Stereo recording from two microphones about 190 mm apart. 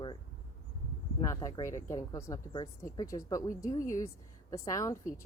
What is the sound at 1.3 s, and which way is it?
Speech, 20° left (ahead or behind).